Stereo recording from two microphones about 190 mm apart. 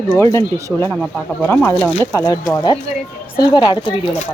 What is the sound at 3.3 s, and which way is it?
Speech, 20° left (ahead or behind).